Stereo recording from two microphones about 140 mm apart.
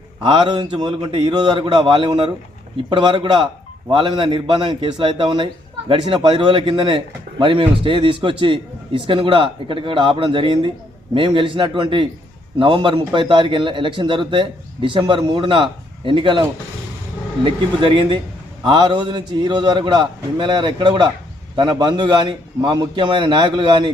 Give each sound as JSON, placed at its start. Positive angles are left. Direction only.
{"t": 0.2, "sound": "speech", "side_deg": -35}
{"t": 17.4, "sound": "speech", "side_deg": -35}